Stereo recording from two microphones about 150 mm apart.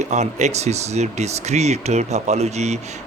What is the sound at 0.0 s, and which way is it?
Speech, 50° right (ahead or behind).